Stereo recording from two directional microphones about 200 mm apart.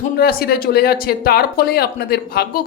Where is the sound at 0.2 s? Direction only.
50° left (ahead or behind).